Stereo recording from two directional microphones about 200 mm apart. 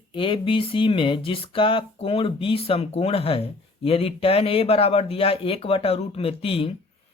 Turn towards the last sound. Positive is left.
turn(degrees=30)  # may be behind; listen again after turning